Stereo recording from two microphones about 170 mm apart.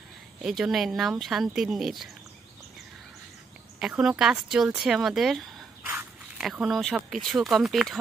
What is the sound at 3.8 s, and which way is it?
Speech, 5° right (ahead or behind).